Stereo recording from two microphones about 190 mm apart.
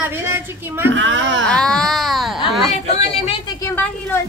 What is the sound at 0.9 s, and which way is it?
Speech, 80° right.